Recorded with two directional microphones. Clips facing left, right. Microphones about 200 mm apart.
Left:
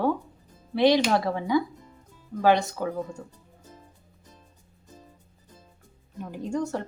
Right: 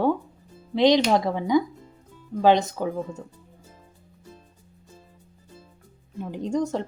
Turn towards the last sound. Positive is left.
turn(degrees=-20)  # may be behind; listen again after turning